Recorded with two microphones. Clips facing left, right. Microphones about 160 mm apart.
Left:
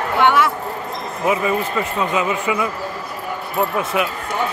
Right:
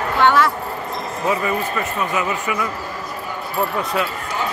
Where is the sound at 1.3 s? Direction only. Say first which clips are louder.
Left 2 dB; 15° left (ahead or behind).